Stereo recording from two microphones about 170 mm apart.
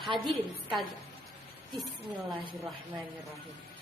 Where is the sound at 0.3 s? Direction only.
Centre (ahead or behind).